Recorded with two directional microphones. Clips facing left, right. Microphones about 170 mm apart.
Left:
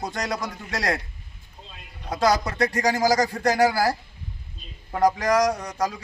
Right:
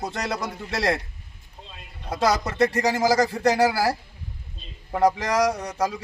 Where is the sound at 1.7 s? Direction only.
5° right (ahead or behind).